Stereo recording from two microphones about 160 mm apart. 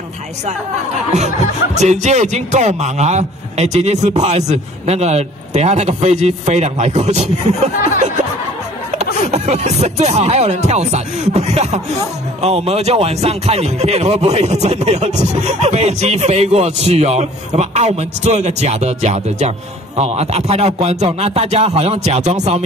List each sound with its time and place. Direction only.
1.8 s speech: 45° right (ahead or behind)